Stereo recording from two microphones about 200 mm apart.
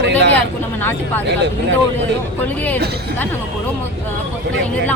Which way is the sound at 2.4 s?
10° left (ahead or behind).